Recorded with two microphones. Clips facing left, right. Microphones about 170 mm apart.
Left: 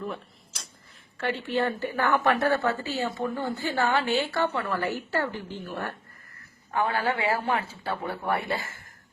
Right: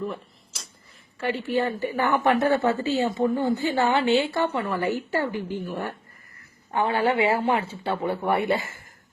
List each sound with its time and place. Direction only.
0.0 s a sound: centre (ahead or behind)
1.2 s a woman's voice: 10° right (ahead or behind)
6.7 s speech: 25° right (ahead or behind)